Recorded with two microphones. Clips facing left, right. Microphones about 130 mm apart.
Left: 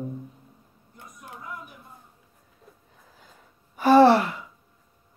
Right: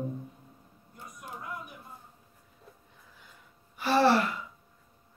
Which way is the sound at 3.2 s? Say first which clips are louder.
Left 2 dB; 45° left (ahead or behind).